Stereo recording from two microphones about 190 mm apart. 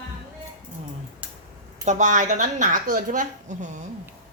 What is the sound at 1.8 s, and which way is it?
A woman's voice, 40° right (ahead or behind).